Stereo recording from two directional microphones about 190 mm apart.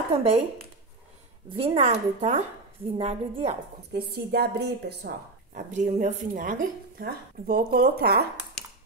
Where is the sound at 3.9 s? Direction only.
55° right (ahead or behind).